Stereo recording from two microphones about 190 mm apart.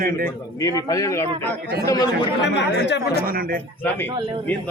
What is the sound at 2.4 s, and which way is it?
Speech, 65° left (ahead or behind).